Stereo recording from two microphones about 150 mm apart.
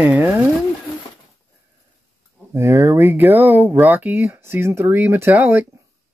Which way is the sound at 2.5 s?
20° right (ahead or behind).